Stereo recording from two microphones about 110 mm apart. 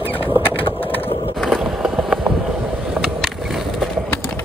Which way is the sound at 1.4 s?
Centre (ahead or behind).